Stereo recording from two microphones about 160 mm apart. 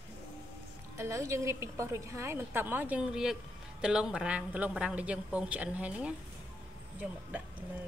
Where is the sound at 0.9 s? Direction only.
20° right (ahead or behind).